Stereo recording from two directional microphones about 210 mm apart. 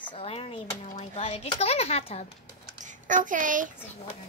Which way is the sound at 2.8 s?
35° right (ahead or behind).